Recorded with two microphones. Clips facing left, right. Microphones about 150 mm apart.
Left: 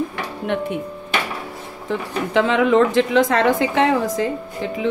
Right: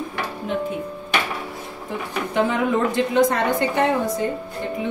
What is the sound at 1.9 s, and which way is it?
Speech, 90° left.